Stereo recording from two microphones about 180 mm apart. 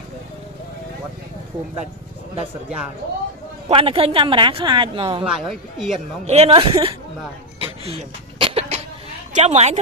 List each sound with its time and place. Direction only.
3.6 s speech: 30° right (ahead or behind)
5.2 s a man's voice: centre (ahead or behind)
5.9 s speech: 35° right (ahead or behind)
7.6 s cough: 30° right (ahead or behind)
9.3 s a woman's voice: 40° right (ahead or behind)